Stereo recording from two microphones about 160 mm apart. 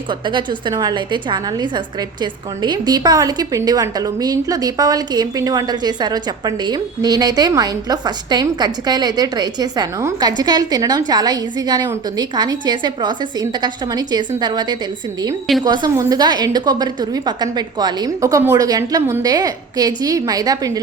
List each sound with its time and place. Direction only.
0.1 s a woman's voice: 30° right (ahead or behind)